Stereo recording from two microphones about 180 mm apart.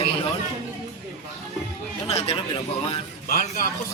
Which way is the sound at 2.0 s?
30° left (ahead or behind).